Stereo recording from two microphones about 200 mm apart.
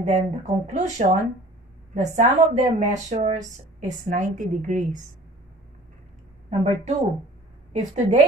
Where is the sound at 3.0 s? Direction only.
35° right (ahead or behind).